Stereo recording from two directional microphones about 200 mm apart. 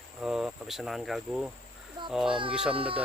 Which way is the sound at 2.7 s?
25° right (ahead or behind).